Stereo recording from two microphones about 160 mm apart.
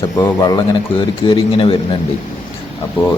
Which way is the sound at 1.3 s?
35° left (ahead or behind).